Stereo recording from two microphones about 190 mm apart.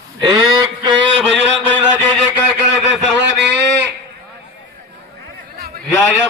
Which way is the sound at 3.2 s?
65° right (ahead or behind).